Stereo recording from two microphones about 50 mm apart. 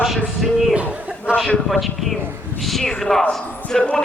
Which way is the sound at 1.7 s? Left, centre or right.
Centre.